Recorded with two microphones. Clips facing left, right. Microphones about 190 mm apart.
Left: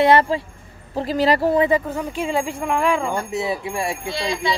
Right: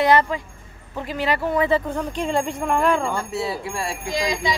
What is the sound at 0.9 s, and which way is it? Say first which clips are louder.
Speech: left 6 dB; 35° left (ahead or behind).